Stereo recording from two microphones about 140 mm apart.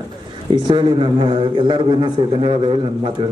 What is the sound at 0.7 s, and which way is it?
A man's voice, 35° right (ahead or behind).